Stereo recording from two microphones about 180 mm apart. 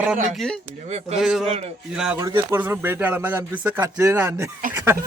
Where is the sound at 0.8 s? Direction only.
35° right (ahead or behind).